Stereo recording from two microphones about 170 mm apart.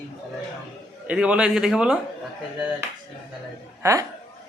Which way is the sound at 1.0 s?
5° right (ahead or behind).